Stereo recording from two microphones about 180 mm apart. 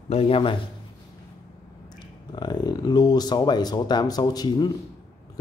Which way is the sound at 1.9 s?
25° left (ahead or behind).